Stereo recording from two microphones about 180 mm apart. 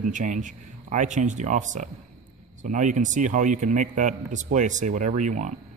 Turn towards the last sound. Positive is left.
turn(degrees=-45)  # may be behind; listen again after turning